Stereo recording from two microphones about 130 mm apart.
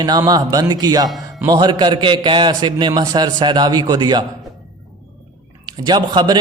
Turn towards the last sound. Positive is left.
turn(degrees=-35)  # may be behind; listen again after turning